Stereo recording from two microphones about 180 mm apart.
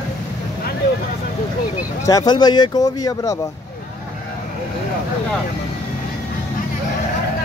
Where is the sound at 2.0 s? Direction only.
20° left (ahead or behind).